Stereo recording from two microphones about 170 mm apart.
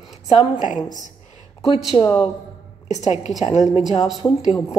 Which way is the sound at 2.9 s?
40° left (ahead or behind).